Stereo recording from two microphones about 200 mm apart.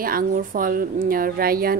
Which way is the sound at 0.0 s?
45° right (ahead or behind).